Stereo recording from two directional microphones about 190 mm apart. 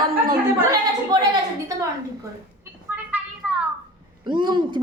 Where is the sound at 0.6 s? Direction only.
20° right (ahead or behind).